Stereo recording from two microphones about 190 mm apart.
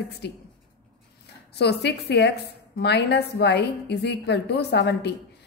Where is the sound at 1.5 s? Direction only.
60° left (ahead or behind).